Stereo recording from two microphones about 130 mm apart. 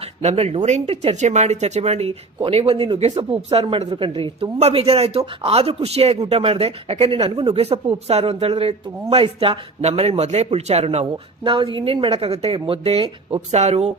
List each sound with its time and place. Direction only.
0.2 s speech: 55° right (ahead or behind)
11.4 s speech: 40° right (ahead or behind); by 13.9 s 55° right (ahead or behind)